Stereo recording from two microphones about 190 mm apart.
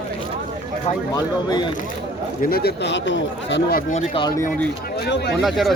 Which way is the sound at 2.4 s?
55° left (ahead or behind).